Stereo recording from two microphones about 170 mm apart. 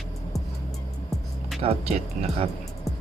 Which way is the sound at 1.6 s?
35° right (ahead or behind).